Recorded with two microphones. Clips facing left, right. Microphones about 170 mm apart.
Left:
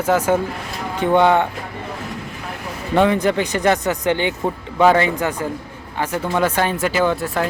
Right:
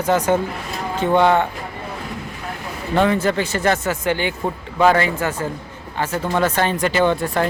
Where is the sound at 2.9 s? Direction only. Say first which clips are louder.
Left 1 dB; 15° left (ahead or behind).